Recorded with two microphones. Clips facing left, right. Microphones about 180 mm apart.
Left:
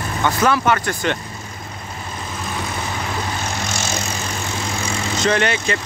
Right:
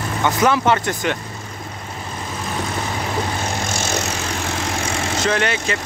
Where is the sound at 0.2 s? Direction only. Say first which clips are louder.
Right 1 dB; 15° right (ahead or behind).